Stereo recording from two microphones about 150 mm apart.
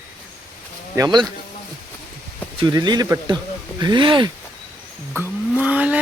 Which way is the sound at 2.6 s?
30° right (ahead or behind).